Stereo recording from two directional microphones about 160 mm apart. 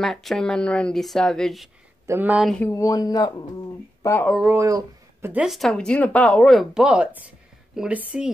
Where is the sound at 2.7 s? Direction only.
20° left (ahead or behind).